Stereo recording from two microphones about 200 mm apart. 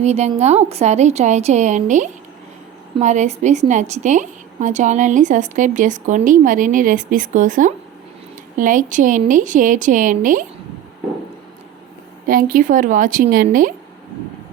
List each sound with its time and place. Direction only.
0.0 s a woman's voice: 35° right (ahead or behind)
12.3 s a woman's voice: 45° right (ahead or behind)